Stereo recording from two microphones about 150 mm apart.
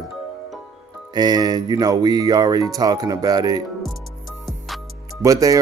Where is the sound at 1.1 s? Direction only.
25° right (ahead or behind).